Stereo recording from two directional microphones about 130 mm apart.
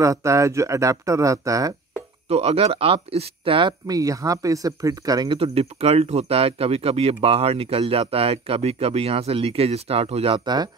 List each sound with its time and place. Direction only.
0.0 s speech: 25° right (ahead or behind)
2.2 s speech: 50° right (ahead or behind); by 5.4 s 30° right (ahead or behind)
5.4 s speech: 50° right (ahead or behind); by 10.7 s 35° right (ahead or behind)